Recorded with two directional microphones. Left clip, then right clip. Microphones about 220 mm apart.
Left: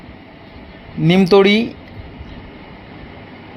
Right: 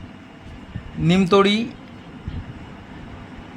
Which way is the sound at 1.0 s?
15° left (ahead or behind).